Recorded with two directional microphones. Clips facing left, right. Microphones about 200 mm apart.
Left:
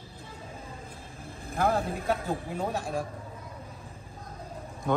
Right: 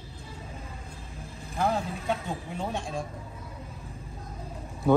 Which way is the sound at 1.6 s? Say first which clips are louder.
Left 1 dB; 55° left (ahead or behind).